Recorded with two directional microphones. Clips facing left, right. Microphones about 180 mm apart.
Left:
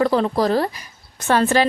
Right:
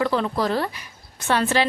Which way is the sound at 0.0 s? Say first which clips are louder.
Left 4 dB; 40° left (ahead or behind).